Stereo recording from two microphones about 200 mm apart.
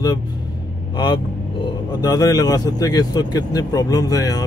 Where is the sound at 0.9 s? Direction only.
20° left (ahead or behind).